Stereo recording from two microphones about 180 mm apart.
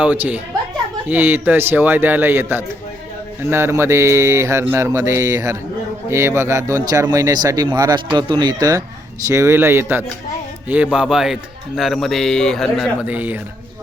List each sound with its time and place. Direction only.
0.0 s mantra: 10° right (ahead or behind)
7.4 s speech: 20° right (ahead or behind)
9.2 s mantra: 15° right (ahead or behind)
10.9 s speech: 5° right (ahead or behind)